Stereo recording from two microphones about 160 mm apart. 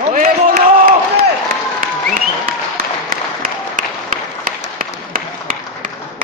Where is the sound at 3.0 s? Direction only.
55° right (ahead or behind).